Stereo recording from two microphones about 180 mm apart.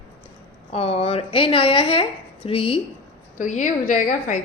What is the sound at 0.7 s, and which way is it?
Speech, 35° left (ahead or behind).